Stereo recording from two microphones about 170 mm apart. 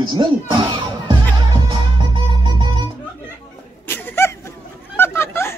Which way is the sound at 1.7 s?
25° right (ahead or behind).